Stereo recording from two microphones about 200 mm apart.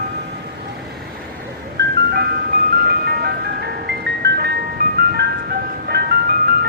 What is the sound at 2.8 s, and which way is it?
Ice cream truck, 50° right (ahead or behind).